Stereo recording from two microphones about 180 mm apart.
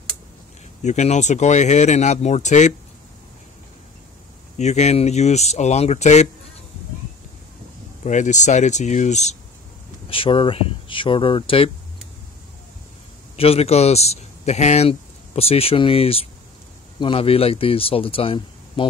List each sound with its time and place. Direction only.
0.8 s speech: 40° left (ahead or behind)
4.6 s speech: 40° left (ahead or behind)
8.0 s speech: 40° left (ahead or behind)
13.4 s speech: 35° left (ahead or behind)